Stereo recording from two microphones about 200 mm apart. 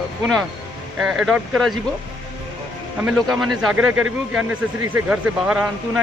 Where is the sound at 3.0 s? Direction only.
Centre (ahead or behind).